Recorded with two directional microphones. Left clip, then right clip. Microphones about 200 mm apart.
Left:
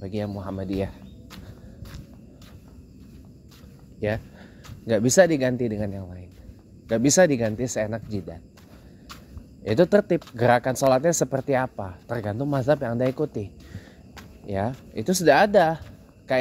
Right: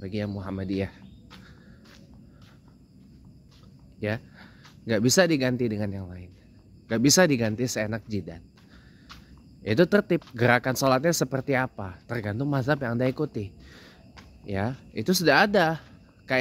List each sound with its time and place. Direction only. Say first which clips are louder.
0.0 s speech: left 2 dB; 20° right (ahead or behind)
4.0 s a sound: left 4 dB; 15° right (ahead or behind)
4.8 s speech: left 4 dB; 20° right (ahead or behind)
9.6 s speech: left 3 dB; 20° right (ahead or behind)